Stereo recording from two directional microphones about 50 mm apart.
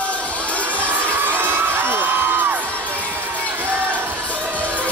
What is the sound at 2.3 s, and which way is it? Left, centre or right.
Music, right.